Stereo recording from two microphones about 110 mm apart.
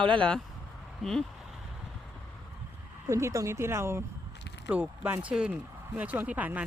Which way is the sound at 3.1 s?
25° right (ahead or behind).